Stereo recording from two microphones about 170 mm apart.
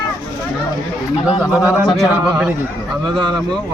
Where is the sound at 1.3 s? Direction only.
20° left (ahead or behind).